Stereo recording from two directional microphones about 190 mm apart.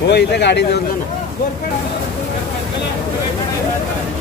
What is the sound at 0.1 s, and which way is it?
Speech, 60° left (ahead or behind).